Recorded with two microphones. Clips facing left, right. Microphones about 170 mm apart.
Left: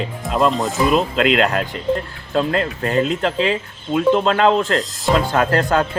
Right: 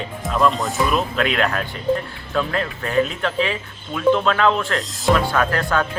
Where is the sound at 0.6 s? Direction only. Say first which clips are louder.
Left 4 dB; 25° left (ahead or behind).